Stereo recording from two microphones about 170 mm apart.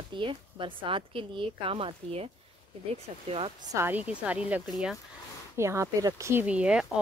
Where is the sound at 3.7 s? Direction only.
15° right (ahead or behind).